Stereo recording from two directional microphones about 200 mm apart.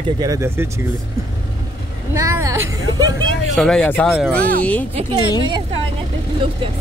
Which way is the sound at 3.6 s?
5° left (ahead or behind).